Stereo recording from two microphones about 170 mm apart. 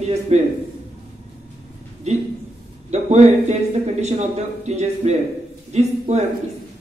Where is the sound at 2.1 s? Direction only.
40° right (ahead or behind).